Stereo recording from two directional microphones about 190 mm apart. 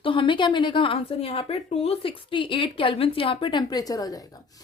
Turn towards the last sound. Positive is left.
turn(degrees=20)  # may be behind; listen again after turning